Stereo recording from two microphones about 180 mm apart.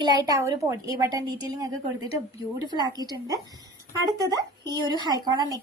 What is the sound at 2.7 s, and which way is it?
Speech, 20° right (ahead or behind).